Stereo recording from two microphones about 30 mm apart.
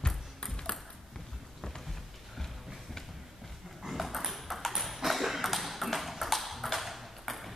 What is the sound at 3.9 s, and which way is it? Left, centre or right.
Ping, centre.